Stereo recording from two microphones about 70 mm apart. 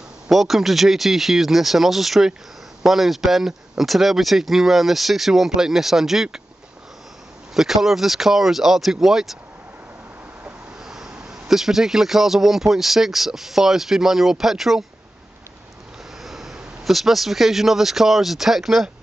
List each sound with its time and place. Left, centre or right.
0.3 s a man's voice: centre
7.5 s a man's voice: centre
10.8 s a man's voice: centre
16.2 s speech: centre